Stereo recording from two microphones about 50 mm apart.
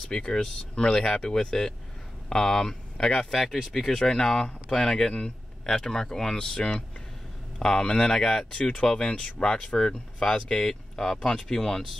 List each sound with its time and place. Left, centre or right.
0.1 s speech: centre
3.3 s speech: centre